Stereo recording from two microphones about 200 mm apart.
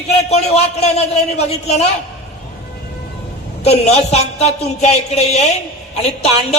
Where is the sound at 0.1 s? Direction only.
30° left (ahead or behind).